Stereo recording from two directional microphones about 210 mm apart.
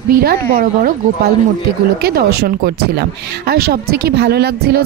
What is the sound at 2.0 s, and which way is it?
Speech, 45° right (ahead or behind).